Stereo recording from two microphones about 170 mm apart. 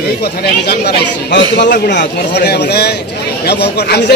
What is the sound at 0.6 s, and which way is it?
A man's voice, 75° left (ahead or behind).